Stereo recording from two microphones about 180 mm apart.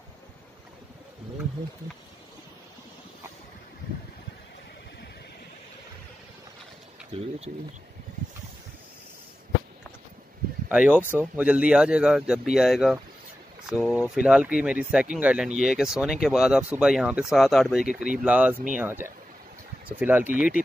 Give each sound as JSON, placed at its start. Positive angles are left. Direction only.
{"t": 7.2, "sound": "speech", "side_deg": -35}
{"t": 10.7, "sound": "speech", "side_deg": -5}